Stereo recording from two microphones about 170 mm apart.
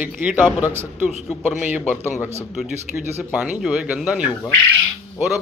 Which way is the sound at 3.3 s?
5° right (ahead or behind).